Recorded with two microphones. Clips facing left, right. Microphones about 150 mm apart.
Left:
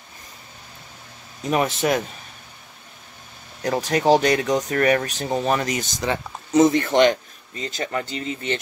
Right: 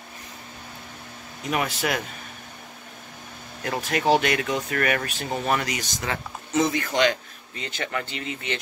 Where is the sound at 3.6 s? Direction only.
40° left (ahead or behind).